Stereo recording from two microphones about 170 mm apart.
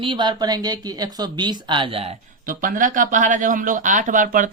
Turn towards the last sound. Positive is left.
turn(degrees=-50)  # may be behind; listen again after turning